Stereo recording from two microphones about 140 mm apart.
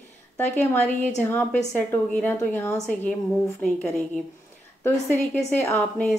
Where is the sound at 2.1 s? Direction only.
15° left (ahead or behind).